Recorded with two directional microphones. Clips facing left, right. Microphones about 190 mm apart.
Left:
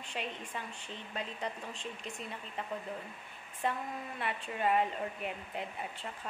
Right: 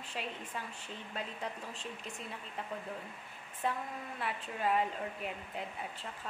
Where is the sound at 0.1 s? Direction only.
5° right (ahead or behind).